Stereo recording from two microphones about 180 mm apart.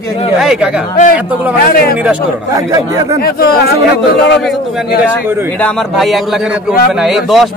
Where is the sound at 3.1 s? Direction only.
55° left (ahead or behind).